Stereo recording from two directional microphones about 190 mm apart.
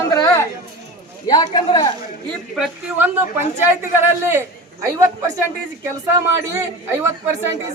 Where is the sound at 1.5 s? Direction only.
20° left (ahead or behind).